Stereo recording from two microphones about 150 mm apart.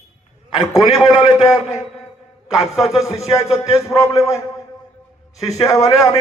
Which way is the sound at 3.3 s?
20° left (ahead or behind).